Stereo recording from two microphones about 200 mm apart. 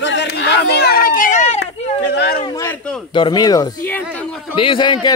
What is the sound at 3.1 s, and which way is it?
Speech, 20° left (ahead or behind).